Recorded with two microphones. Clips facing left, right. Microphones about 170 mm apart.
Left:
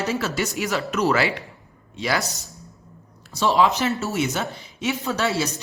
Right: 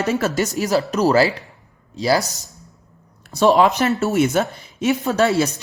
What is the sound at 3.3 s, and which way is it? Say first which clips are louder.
A woman's voice: right 5 dB; 55° right (ahead or behind).